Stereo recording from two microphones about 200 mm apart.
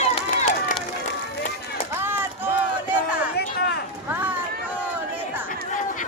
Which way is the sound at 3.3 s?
50° left (ahead or behind).